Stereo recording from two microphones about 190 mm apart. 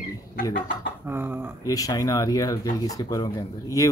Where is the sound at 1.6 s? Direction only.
20° left (ahead or behind).